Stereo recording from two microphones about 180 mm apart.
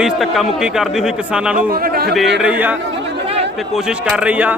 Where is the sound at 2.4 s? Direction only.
10° right (ahead or behind).